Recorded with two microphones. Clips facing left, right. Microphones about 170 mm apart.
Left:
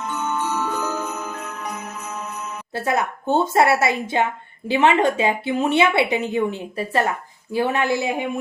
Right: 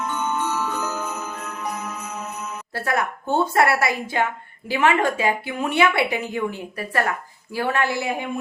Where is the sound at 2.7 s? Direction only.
20° left (ahead or behind).